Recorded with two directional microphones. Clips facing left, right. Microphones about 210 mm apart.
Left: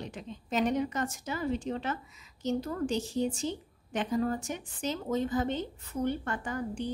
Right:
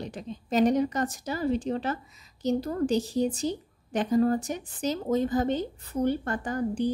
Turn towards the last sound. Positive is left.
turn(degrees=-35)  # may be behind; listen again after turning